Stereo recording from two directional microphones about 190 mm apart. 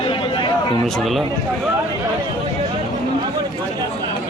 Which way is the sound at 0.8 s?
Centre (ahead or behind).